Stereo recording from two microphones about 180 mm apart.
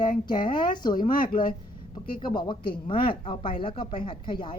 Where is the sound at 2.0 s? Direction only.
25° left (ahead or behind).